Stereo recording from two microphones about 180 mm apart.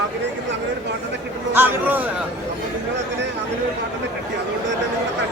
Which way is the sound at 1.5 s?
10° right (ahead or behind).